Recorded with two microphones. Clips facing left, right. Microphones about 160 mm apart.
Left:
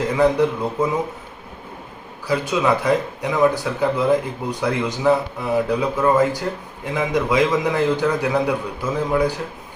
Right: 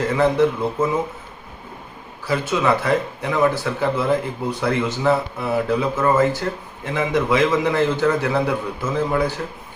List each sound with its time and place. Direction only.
0.2 s a man's voice: 15° left (ahead or behind)
2.2 s a man's voice: 15° left (ahead or behind)